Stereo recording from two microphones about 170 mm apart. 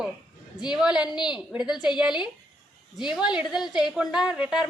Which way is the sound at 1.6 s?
25° left (ahead or behind).